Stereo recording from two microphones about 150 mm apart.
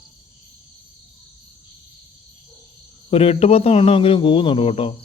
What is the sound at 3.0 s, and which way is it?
Speech, 45° left (ahead or behind).